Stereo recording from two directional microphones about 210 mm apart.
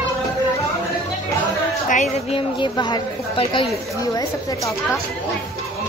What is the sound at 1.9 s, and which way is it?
A woman's voice, 35° left (ahead or behind).